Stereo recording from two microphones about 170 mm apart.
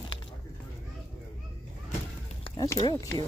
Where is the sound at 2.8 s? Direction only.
25° left (ahead or behind).